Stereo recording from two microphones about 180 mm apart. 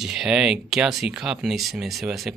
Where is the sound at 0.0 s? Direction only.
5° right (ahead or behind).